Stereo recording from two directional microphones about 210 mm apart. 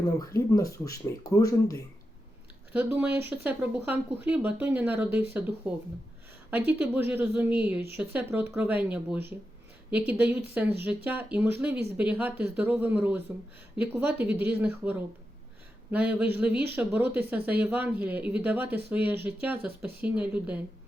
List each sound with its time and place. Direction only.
0.2 s speech: 15° left (ahead or behind)
2.7 s speech: 10° right (ahead or behind)